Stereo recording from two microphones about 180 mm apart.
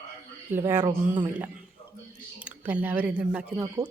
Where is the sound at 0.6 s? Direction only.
20° right (ahead or behind).